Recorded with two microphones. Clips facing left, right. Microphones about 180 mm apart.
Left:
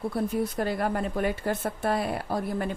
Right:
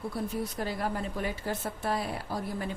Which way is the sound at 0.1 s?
55° left (ahead or behind).